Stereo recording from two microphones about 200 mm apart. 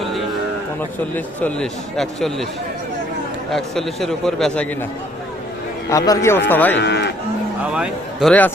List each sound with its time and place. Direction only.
1.1 s a man's voice: 5° left (ahead or behind)
3.5 s a man's voice: centre (ahead or behind)
5.9 s a man's voice: 15° left (ahead or behind)
6.7 s moo: 55° left (ahead or behind)
7.7 s a man's voice: 5° right (ahead or behind)
8.3 s a man's voice: 10° left (ahead or behind)